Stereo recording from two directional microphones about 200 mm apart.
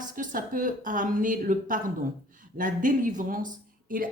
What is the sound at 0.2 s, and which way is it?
A woman's voice, 40° right (ahead or behind).